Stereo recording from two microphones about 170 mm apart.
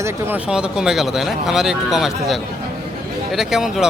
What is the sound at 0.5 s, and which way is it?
Speech, 5° right (ahead or behind).